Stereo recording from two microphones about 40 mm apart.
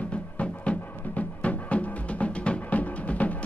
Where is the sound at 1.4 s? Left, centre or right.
Left.